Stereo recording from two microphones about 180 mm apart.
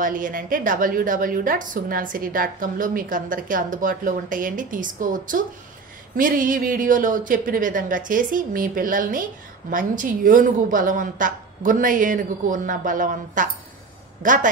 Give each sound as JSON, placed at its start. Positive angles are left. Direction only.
{"t": 0.0, "sound": "a woman's voice", "side_deg": -50}